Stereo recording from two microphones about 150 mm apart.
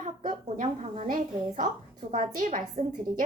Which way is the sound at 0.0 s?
60° right (ahead or behind).